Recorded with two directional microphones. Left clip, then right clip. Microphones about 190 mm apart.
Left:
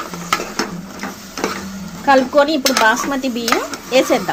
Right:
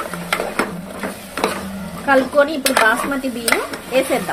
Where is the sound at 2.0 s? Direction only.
25° left (ahead or behind).